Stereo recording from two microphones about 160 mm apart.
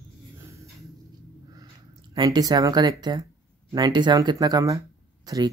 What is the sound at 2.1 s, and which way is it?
Speech, 25° right (ahead or behind).